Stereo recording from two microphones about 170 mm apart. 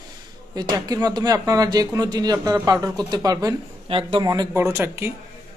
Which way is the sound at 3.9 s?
35° right (ahead or behind).